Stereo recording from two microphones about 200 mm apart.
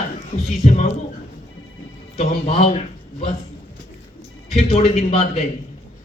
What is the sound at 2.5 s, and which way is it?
Speech, 30° left (ahead or behind).